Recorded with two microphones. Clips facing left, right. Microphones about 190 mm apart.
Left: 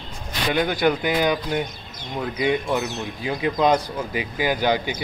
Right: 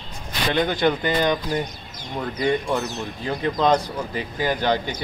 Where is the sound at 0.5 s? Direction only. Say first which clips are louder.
Even; 5° left (ahead or behind).